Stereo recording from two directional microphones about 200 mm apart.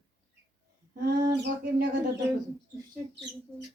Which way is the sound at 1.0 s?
55° right (ahead or behind).